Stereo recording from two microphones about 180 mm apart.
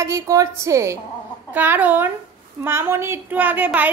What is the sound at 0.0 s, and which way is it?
A woman's voice, 15° right (ahead or behind).